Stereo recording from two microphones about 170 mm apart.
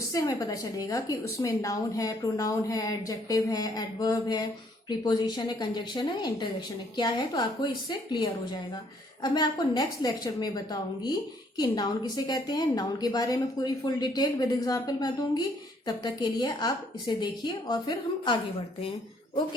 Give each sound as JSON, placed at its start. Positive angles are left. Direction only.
{"t": 0.1, "sound": "a woman's voice", "side_deg": 20}